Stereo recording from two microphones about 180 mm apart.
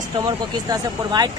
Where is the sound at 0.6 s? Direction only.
20° right (ahead or behind).